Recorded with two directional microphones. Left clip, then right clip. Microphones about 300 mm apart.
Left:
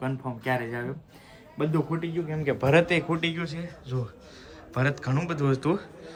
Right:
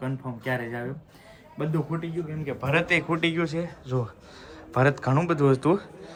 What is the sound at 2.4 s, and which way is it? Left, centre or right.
Speech, left.